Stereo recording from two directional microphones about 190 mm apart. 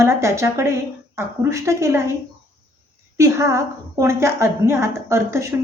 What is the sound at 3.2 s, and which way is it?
A woman's voice, 15° right (ahead or behind).